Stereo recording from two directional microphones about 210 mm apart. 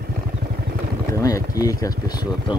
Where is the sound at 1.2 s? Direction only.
15° left (ahead or behind).